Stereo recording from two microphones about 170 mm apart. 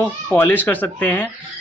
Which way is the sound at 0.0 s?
15° left (ahead or behind).